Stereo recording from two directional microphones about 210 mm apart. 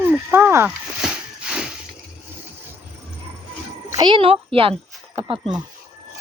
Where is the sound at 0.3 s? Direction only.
10° right (ahead or behind).